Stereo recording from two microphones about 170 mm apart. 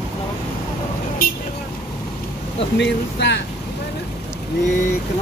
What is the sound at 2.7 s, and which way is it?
Speech, 90° left.